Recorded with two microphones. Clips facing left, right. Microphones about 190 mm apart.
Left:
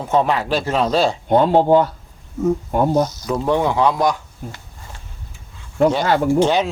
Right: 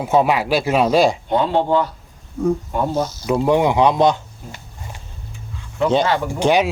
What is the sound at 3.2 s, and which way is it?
Speech, 10° right (ahead or behind).